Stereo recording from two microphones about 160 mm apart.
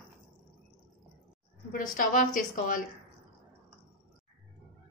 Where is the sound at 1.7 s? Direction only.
55° left (ahead or behind).